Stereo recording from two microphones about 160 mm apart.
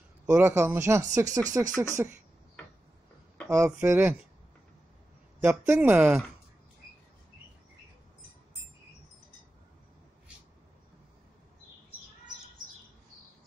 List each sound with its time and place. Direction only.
0.3 s speech: 15° right (ahead or behind)
3.4 s speech: 20° right (ahead or behind)
5.4 s speech: 10° right (ahead or behind)